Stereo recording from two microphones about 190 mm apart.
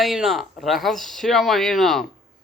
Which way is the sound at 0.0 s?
Centre (ahead or behind).